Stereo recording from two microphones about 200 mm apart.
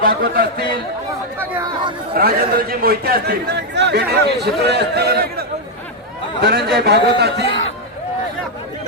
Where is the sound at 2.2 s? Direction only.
45° right (ahead or behind).